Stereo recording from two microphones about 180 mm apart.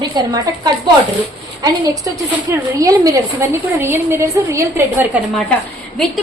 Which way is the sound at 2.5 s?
20° right (ahead or behind).